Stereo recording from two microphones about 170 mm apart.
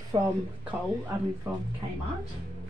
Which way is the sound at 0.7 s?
10° right (ahead or behind).